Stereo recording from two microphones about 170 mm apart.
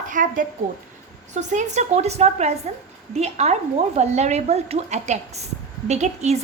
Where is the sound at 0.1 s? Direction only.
50° right (ahead or behind).